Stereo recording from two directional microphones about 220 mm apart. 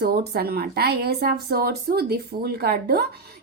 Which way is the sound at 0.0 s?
45° right (ahead or behind).